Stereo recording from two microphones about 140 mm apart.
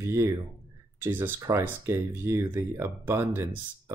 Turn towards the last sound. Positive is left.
turn(degrees=-20)  # may be behind; listen again after turning